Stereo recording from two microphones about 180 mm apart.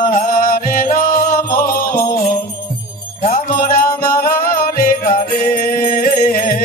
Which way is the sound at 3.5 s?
55° left (ahead or behind).